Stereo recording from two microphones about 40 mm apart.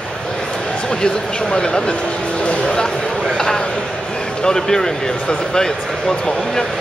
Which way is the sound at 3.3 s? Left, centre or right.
Centre.